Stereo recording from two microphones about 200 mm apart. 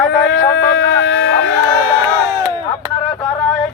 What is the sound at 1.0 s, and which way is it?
Speech, 75° left (ahead or behind).